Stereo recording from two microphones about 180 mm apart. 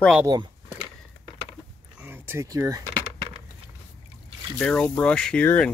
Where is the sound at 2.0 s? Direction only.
10° right (ahead or behind).